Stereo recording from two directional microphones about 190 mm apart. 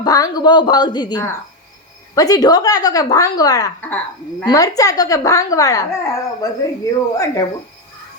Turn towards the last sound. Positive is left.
turn(degrees=15)  # may be behind; listen again after turning